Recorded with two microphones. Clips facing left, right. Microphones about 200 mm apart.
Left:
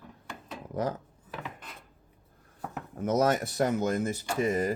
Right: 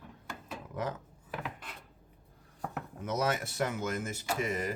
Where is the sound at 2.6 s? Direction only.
5° left (ahead or behind).